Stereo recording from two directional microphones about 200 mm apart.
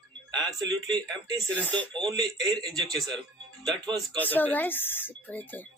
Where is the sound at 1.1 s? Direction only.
5° left (ahead or behind).